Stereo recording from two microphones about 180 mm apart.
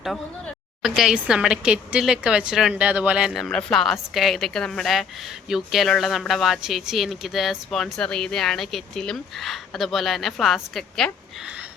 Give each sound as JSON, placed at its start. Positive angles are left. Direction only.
{"t": 0.0, "sound": "a woman's voice", "side_deg": 0}